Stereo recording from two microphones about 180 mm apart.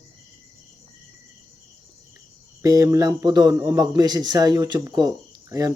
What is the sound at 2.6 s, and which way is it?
A man's voice, 15° right (ahead or behind).